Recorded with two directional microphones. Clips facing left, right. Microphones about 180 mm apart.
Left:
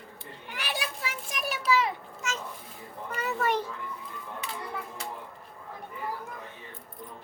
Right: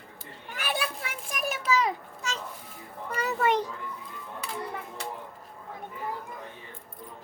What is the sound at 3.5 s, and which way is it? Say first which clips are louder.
Children playing: right 3 dB; 15° right (ahead or behind).